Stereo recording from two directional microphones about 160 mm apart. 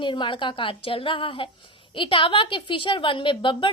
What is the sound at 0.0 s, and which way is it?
A woman's voice, 30° left (ahead or behind).